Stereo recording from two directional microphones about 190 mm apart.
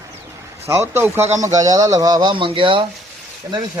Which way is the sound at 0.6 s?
15° right (ahead or behind).